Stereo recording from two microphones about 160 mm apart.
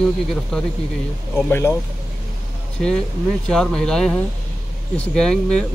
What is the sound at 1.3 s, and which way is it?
Speech, 15° left (ahead or behind).